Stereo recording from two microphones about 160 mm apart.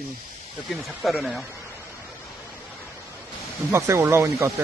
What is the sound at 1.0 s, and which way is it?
Speech, centre (ahead or behind).